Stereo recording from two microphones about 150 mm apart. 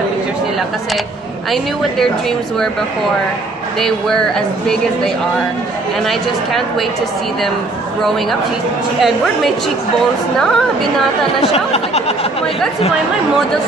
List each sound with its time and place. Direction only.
1.5 s speech: centre (ahead or behind)
3.8 s speech: 5° left (ahead or behind)
9.0 s speech: centre (ahead or behind)
11.5 s speech: 45° left (ahead or behind)